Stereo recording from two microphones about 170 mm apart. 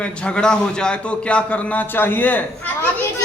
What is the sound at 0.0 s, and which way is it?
A man's voice, 5° left (ahead or behind).